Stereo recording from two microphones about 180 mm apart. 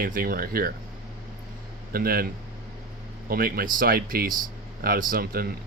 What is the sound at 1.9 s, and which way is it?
Speech, 55° right (ahead or behind).